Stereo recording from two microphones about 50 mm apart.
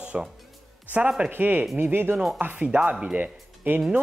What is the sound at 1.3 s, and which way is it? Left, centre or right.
Speech, right.